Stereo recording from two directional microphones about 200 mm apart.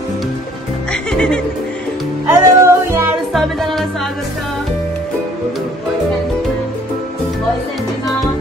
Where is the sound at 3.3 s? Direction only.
Centre (ahead or behind).